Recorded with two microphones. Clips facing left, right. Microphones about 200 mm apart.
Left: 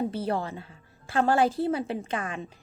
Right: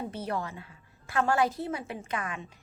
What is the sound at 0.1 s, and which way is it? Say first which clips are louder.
A woman's voice: left 4 dB; 30° left (ahead or behind).